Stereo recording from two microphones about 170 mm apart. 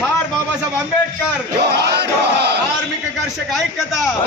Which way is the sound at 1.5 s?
75° right (ahead or behind).